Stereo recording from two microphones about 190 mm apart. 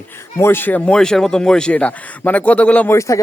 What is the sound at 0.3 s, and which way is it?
Speech, 10° left (ahead or behind).